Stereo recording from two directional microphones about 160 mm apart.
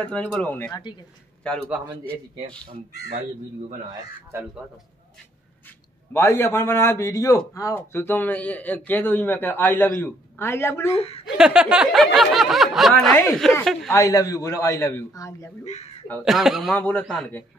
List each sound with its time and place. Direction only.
0.1 s a man's voice: 10° left (ahead or behind)
6.1 s a man's voice: 15° left (ahead or behind)
10.9 s speech: 40° left (ahead or behind)
11.3 s speech: 5° right (ahead or behind)
13.9 s a man's voice: 20° left (ahead or behind)
16.3 s speech: centre (ahead or behind)